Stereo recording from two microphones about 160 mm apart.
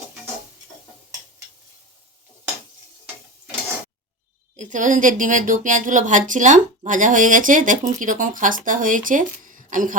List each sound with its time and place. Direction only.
4.5 s speech: 50° right (ahead or behind)